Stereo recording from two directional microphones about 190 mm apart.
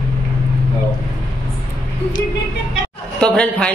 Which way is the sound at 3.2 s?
5° left (ahead or behind).